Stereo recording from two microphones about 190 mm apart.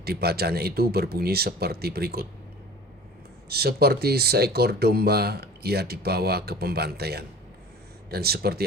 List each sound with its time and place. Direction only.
0.0 s speech: 55° right (ahead or behind)
3.5 s speech: 55° right (ahead or behind)